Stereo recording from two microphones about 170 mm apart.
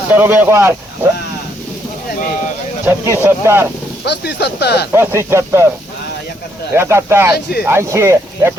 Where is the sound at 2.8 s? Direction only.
15° right (ahead or behind).